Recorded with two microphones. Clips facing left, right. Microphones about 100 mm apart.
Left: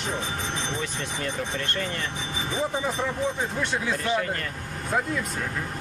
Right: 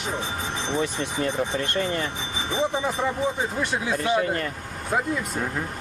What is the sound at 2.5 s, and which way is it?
Speech, centre (ahead or behind).